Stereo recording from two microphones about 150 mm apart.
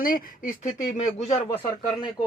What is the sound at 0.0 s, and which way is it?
Speech, 70° left (ahead or behind).